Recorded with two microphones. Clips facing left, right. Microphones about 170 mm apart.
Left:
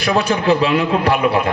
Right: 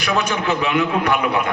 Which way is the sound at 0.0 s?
30° left (ahead or behind).